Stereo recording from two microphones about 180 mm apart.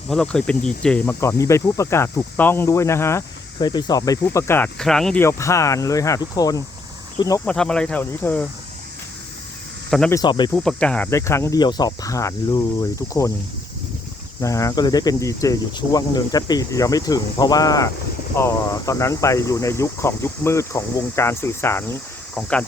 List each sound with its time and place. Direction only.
0.1 s speech: 5° left (ahead or behind)
5.2 s speech: 15° left (ahead or behind)
7.4 s speech: 5° left (ahead or behind)
10.1 s speech: 20° left (ahead or behind)
10.5 s speech: 5° left (ahead or behind); by 12.6 s 20° left (ahead or behind)
14.4 s speech: 15° left (ahead or behind)